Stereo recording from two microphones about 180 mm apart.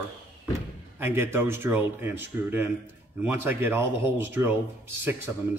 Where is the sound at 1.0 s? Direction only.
10° right (ahead or behind).